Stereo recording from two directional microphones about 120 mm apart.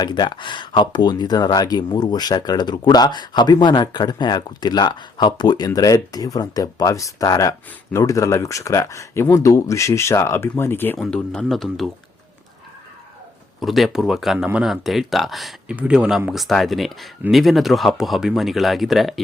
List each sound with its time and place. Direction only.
0.0 s speech: 40° left (ahead or behind); by 10.9 s 15° left (ahead or behind)
10.9 s speech: centre (ahead or behind)
13.6 s speech: centre (ahead or behind)